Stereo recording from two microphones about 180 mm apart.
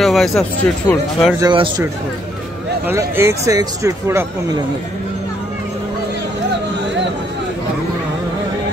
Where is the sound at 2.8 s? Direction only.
15° right (ahead or behind).